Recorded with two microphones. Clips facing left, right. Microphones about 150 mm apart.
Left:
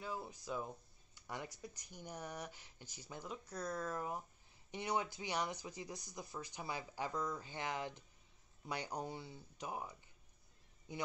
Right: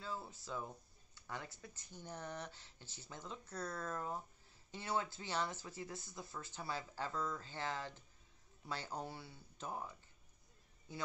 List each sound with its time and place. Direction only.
0.0 s speech: 15° left (ahead or behind)